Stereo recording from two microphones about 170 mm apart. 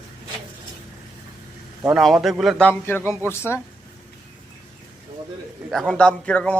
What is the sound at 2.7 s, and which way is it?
Speech, 10° left (ahead or behind).